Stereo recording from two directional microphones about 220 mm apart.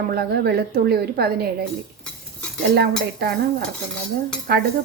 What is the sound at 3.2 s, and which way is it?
A woman's voice, 45° right (ahead or behind).